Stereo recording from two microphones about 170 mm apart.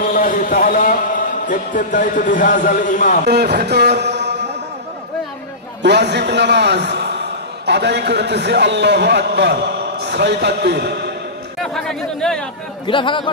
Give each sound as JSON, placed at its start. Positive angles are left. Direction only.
{"t": 0.0, "sound": "a sound", "side_deg": 55}
{"t": 1.5, "sound": "a man's voice", "side_deg": 50}
{"t": 3.3, "sound": "speech", "side_deg": -75}
{"t": 5.8, "sound": "a man's voice", "side_deg": -85}
{"t": 11.6, "sound": "speech", "side_deg": 5}
{"t": 12.8, "sound": "speech", "side_deg": 30}